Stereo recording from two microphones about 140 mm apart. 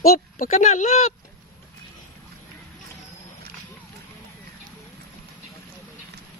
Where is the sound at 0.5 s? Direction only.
55° left (ahead or behind).